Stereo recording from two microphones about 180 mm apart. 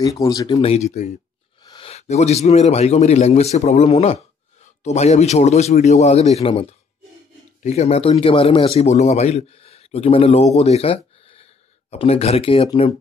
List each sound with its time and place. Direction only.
0.0 s speech: 20° left (ahead or behind)
0.6 s speech: 35° left (ahead or behind)
1.6 s speech: 25° left (ahead or behind)